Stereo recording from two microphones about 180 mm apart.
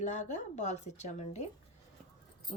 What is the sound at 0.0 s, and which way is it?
A woman's voice, 40° left (ahead or behind).